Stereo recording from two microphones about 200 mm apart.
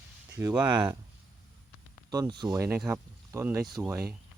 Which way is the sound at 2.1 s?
20° right (ahead or behind).